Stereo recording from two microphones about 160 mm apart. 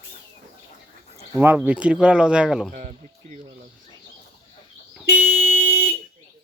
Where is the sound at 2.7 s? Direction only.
50° right (ahead or behind).